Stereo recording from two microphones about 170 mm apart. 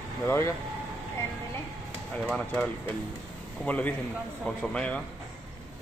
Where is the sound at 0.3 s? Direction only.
15° left (ahead or behind).